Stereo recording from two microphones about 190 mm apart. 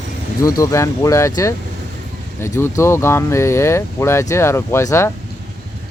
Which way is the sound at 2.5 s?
15° left (ahead or behind).